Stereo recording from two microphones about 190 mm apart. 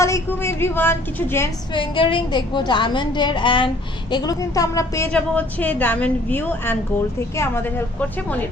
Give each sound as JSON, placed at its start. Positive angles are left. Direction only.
{"t": 0.0, "sound": "a woman's voice", "side_deg": 15}
{"t": 1.7, "sound": "a woman's voice", "side_deg": 25}